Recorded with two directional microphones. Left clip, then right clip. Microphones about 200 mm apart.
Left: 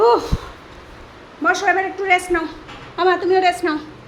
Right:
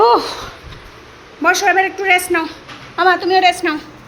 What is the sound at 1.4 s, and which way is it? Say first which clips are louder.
A man's voice: right 4 dB; 20° right (ahead or behind).